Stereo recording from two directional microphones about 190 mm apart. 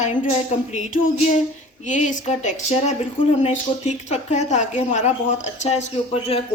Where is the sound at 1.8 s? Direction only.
40° left (ahead or behind).